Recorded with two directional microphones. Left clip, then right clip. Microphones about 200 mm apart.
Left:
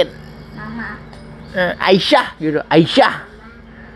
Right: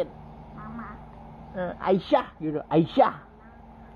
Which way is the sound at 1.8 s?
15° left (ahead or behind).